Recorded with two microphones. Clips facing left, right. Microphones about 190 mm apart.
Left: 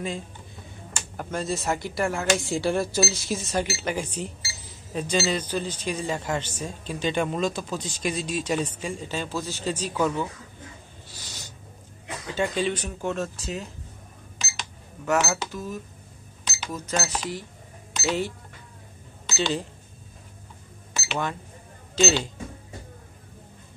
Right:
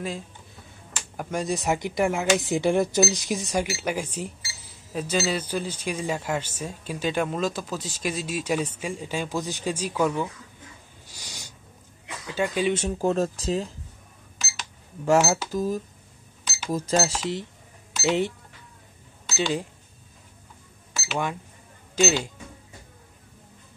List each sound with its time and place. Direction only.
1.1 s speech: 15° right (ahead or behind)
11.1 s a sound: 15° right (ahead or behind)
12.4 s speech: 10° right (ahead or behind)
12.7 s speech: 30° right (ahead or behind)
15.0 s speech: 30° right (ahead or behind); by 19.6 s 10° right (ahead or behind)
20.9 s cash register: 5° right (ahead or behind)
21.9 s speech: 10° right (ahead or behind)